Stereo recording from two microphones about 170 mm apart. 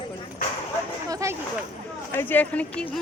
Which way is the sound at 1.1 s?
20° right (ahead or behind).